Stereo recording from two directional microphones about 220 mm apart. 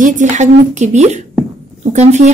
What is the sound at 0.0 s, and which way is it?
A woman's voice, 35° right (ahead or behind).